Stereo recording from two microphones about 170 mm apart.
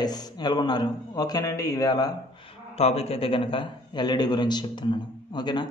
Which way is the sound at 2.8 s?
35° left (ahead or behind).